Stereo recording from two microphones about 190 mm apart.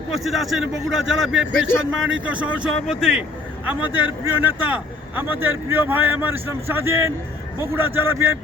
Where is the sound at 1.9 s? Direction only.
90° right.